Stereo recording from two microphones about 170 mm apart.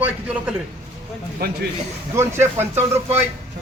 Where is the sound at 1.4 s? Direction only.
70° right (ahead or behind).